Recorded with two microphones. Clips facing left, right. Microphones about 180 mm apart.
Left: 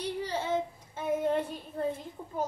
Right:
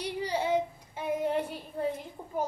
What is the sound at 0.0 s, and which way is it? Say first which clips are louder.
Child singing: right 2 dB; 10° right (ahead or behind).